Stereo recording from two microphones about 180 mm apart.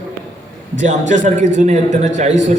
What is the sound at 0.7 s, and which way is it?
A man's voice, 45° right (ahead or behind).